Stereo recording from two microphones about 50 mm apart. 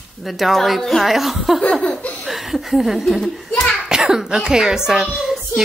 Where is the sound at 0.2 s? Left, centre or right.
Centre.